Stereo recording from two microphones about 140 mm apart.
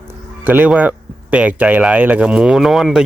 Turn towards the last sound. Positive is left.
turn(degrees=-5)  # may be behind; listen again after turning